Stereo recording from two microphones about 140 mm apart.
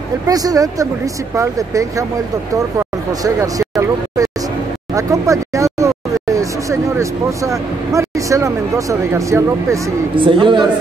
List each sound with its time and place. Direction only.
0.3 s speech: 25° right (ahead or behind)
10.1 s speech: 35° right (ahead or behind)